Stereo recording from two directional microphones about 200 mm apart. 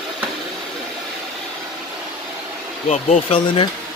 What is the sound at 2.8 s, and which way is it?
Speech, 30° left (ahead or behind).